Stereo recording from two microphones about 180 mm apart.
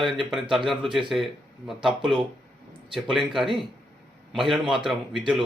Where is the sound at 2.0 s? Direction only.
25° right (ahead or behind).